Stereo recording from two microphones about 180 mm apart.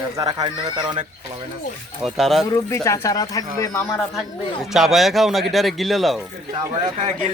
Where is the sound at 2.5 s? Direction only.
15° left (ahead or behind).